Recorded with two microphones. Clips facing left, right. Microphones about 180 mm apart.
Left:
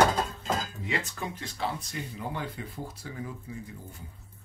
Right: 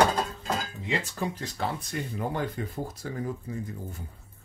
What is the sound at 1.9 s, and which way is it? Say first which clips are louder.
Speech: right 5 dB; 50° right (ahead or behind).